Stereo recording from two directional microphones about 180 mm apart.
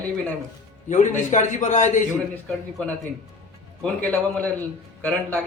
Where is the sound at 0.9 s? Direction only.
40° left (ahead or behind).